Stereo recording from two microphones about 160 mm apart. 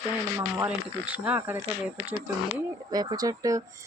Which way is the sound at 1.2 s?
10° right (ahead or behind).